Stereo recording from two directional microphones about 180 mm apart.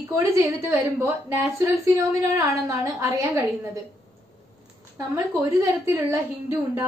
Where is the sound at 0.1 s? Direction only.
15° right (ahead or behind).